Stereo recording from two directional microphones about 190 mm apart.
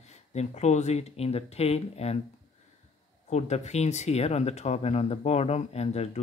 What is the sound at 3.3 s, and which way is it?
Speech, 35° left (ahead or behind).